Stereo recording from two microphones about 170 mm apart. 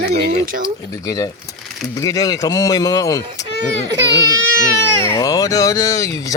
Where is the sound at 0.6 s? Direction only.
20° left (ahead or behind).